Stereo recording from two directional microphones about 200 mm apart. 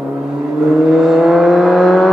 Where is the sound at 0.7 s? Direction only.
Centre (ahead or behind).